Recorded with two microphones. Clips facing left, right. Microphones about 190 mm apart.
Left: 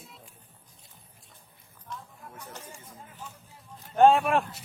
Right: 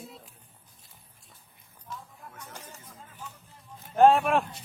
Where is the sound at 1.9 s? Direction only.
Centre (ahead or behind).